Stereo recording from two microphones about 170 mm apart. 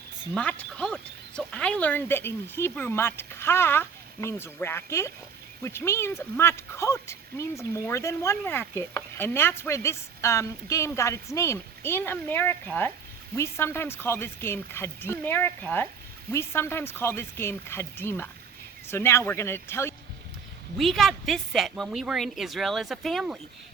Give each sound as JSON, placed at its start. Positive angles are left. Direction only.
{"t": 0.3, "sound": "speech", "side_deg": 5}
{"t": 20.7, "sound": "speech", "side_deg": 0}